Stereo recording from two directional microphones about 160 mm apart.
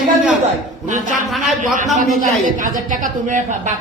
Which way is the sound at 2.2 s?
55° right (ahead or behind).